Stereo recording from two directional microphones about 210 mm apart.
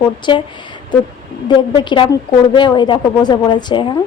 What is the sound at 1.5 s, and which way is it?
A woman's voice, 20° left (ahead or behind).